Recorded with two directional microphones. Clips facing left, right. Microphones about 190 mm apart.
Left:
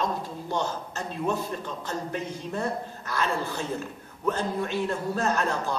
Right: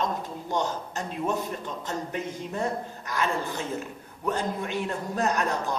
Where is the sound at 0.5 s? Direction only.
15° right (ahead or behind).